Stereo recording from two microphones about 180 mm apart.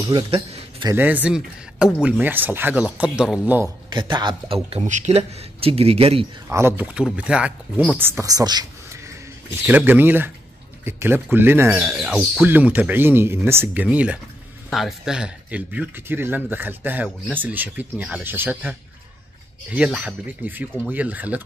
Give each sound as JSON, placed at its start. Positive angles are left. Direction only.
{"t": 0.3, "sound": "a sound", "side_deg": -30}
{"t": 0.8, "sound": "speech", "side_deg": -10}
{"t": 3.9, "sound": "speech", "side_deg": -25}
{"t": 4.6, "sound": "speech", "side_deg": -40}
{"t": 6.5, "sound": "speech", "side_deg": -10}
{"t": 9.7, "sound": "speech", "side_deg": -10}